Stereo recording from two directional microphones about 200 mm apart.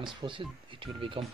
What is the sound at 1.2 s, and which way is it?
Speech, 35° right (ahead or behind).